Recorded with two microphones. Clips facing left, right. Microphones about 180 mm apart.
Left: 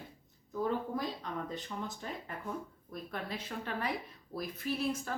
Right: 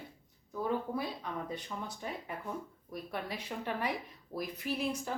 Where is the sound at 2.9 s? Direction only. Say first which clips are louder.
Right 1 dB; 15° right (ahead or behind).